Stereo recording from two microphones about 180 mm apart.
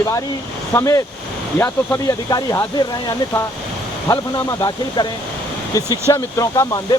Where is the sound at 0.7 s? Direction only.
15° left (ahead or behind).